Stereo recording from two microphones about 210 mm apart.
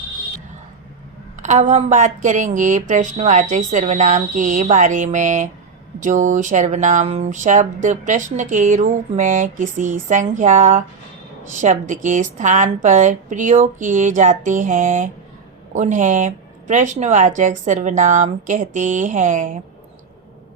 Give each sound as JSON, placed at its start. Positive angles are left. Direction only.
{"t": 1.4, "sound": "speech", "side_deg": -35}